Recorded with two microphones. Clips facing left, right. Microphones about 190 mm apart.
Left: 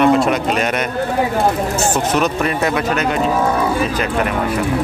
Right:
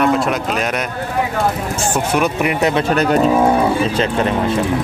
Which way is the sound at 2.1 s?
10° right (ahead or behind).